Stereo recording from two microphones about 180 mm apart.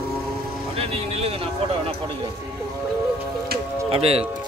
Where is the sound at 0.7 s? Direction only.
35° right (ahead or behind).